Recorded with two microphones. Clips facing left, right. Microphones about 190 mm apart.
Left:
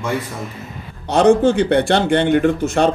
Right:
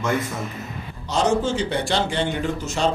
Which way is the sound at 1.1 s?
60° left (ahead or behind).